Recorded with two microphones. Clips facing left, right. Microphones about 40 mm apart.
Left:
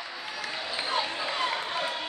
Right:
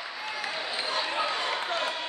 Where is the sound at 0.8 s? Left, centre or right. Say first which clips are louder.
Left 3 dB; centre.